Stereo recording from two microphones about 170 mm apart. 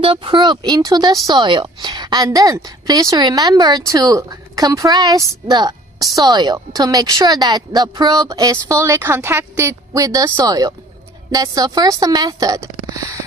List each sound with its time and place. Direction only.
0.0 s speech: 30° right (ahead or behind)